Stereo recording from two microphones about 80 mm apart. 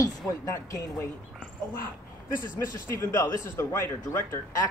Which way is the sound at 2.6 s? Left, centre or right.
Left.